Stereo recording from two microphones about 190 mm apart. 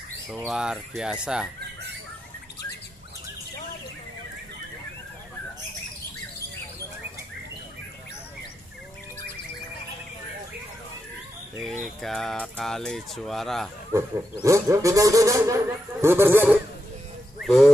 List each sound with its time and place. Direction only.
0.5 s speech: 5° right (ahead or behind)
11.6 s speech: centre (ahead or behind)
13.9 s speech: 15° right (ahead or behind)
17.4 s a sound: centre (ahead or behind)